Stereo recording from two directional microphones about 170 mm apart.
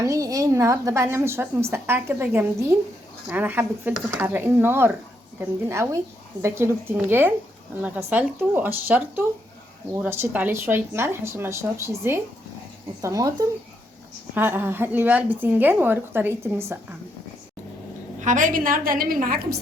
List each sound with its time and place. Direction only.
0.0 s a woman's voice: 20° right (ahead or behind)
14.3 s a woman's voice: 10° right (ahead or behind)
18.2 s a woman's voice: 50° right (ahead or behind)